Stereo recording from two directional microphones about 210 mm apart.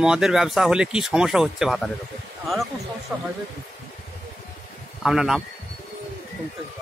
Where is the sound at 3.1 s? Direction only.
5° right (ahead or behind).